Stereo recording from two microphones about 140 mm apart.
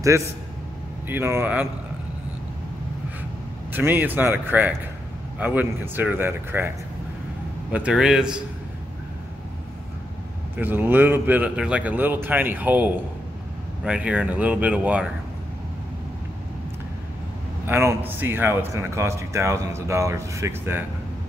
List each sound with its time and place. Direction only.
1.0 s speech: 15° right (ahead or behind)
3.7 s speech: 15° right (ahead or behind)
7.7 s a man's voice: 5° right (ahead or behind)
10.5 s speech: 15° right (ahead or behind)
17.6 s a man's voice: 15° right (ahead or behind)